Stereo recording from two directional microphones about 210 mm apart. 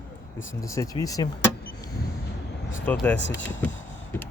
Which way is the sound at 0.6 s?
15° left (ahead or behind).